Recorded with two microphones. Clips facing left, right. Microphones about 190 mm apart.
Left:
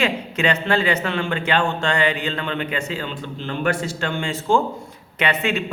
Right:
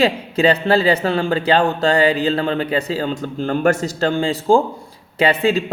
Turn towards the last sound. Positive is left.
turn(degrees=-35)  # may be behind; listen again after turning